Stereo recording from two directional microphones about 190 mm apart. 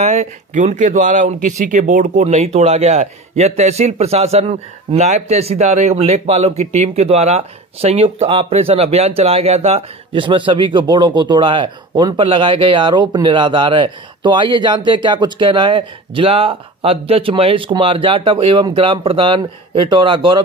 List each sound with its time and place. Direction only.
0.0 s speech: 35° right (ahead or behind)